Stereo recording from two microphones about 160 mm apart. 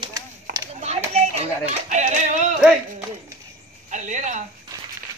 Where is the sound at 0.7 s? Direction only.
40° right (ahead or behind).